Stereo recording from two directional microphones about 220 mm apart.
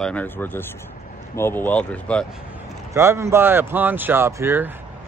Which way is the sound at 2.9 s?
15° right (ahead or behind).